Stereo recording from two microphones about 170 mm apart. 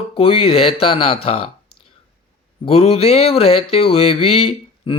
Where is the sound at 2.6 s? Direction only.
35° left (ahead or behind).